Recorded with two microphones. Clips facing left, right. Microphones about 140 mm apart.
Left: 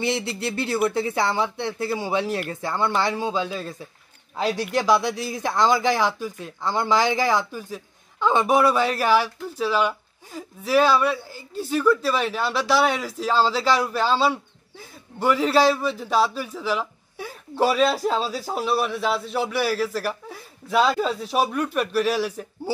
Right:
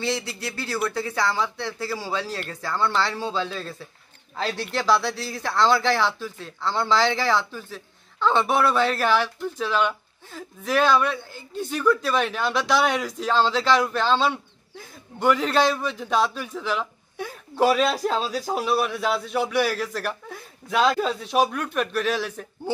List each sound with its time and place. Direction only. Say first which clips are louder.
0.0 s speech: left 3 dB; 20° left (ahead or behind)